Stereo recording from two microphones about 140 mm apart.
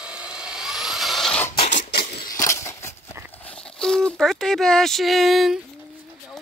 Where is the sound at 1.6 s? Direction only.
60° left (ahead or behind); by 2.3 s 75° left (ahead or behind).